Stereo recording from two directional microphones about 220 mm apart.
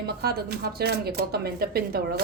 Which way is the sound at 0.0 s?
45° right (ahead or behind).